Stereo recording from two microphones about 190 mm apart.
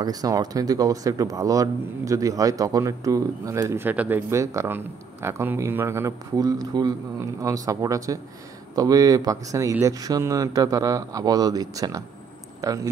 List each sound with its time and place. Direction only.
0.0 s speech: 20° right (ahead or behind)